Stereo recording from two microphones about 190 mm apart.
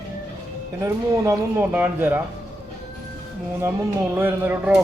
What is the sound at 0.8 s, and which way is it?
Speech, 10° right (ahead or behind).